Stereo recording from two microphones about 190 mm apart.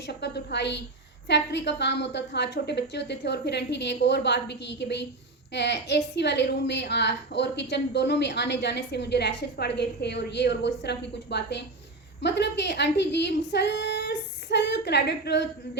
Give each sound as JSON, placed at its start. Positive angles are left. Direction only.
{"t": 0.1, "sound": "a woman's voice", "side_deg": 65}